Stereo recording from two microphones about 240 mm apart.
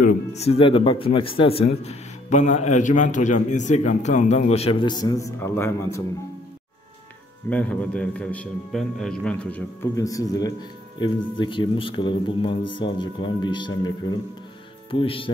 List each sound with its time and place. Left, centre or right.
0.0 s speech: left; by 6.0 s centre
7.4 s a man's voice: centre; by 15.3 s left